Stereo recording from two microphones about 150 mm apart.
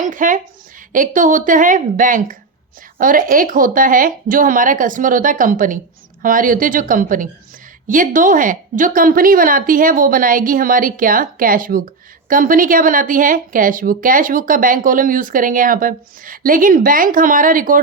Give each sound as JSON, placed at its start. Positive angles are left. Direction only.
{"t": 0.0, "sound": "a woman's voice", "side_deg": -60}